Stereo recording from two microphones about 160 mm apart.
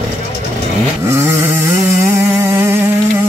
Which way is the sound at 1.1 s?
15° right (ahead or behind).